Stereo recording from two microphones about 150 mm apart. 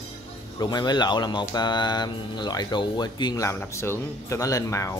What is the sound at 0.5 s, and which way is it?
Speech, 30° left (ahead or behind).